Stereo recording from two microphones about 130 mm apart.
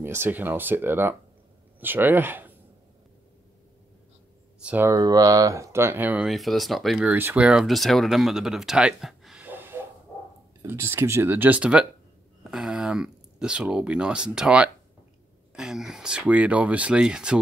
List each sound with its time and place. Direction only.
0.0 s speech: 20° right (ahead or behind)
4.6 s speech: 15° right (ahead or behind)
4.9 s speech: 30° right (ahead or behind)
6.2 s speech: centre (ahead or behind)
7.1 s speech: 15° right (ahead or behind)
9.4 s snort: 15° right (ahead or behind)
10.6 s speech: 20° right (ahead or behind)